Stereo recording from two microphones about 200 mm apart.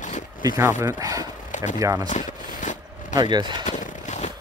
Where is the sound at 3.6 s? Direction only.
40° left (ahead or behind).